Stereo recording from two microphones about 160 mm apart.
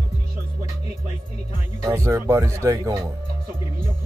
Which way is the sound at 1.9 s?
15° right (ahead or behind).